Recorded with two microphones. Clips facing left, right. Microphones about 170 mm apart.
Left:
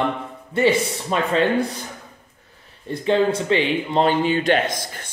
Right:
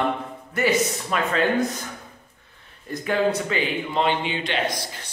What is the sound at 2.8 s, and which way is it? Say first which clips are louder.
Speech: left 4 dB; 25° left (ahead or behind).